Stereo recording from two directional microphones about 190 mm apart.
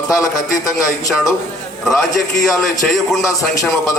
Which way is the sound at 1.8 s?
Centre (ahead or behind).